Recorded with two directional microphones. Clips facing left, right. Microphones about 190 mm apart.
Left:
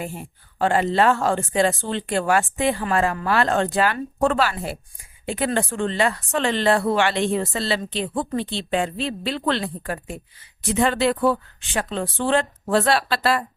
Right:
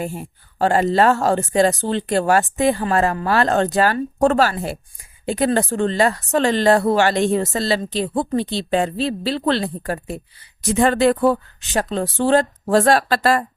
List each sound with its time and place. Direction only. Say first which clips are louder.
0.6 s speech: right 3 dB; 40° right (ahead or behind)